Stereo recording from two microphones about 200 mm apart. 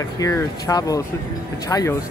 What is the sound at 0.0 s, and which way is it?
Speech, 15° left (ahead or behind).